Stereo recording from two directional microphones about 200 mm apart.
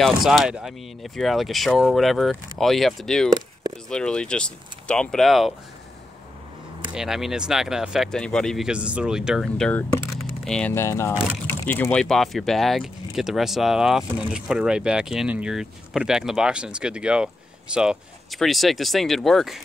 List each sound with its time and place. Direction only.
0.0 s speech: centre (ahead or behind)
6.9 s speech: centre (ahead or behind)